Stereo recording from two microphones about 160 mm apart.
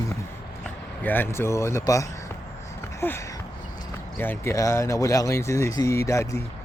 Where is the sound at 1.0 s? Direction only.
10° left (ahead or behind).